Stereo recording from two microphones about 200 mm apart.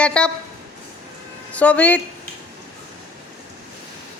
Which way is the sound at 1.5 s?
5° left (ahead or behind).